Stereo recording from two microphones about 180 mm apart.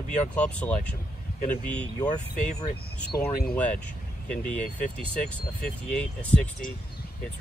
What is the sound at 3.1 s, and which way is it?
Speech, 20° left (ahead or behind).